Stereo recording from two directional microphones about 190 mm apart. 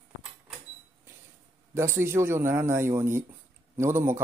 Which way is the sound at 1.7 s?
15° right (ahead or behind).